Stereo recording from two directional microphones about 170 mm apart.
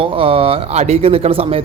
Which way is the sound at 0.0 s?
30° right (ahead or behind).